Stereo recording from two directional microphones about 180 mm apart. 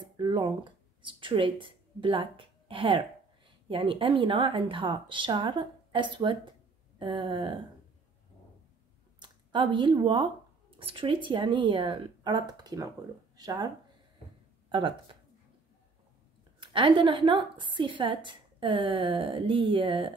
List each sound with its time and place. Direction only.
0.2 s a woman's voice: 25° right (ahead or behind)
9.2 s a woman's voice: 25° right (ahead or behind)
14.7 s speech: 25° right (ahead or behind)
16.5 s a woman's voice: 30° right (ahead or behind)